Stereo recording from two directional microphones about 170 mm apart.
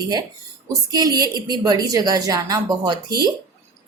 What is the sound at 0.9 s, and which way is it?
A woman's voice, 20° right (ahead or behind).